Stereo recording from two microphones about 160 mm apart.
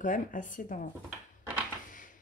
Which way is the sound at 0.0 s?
55° left (ahead or behind).